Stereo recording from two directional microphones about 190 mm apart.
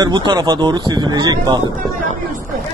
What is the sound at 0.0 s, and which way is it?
Speech, 25° right (ahead or behind).